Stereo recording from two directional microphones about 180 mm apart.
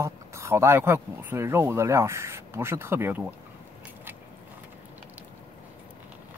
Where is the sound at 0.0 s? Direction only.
15° right (ahead or behind).